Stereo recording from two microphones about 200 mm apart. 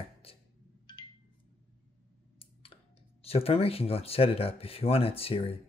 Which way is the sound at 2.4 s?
30° left (ahead or behind).